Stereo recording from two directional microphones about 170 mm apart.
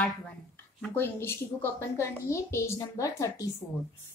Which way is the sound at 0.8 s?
10° left (ahead or behind).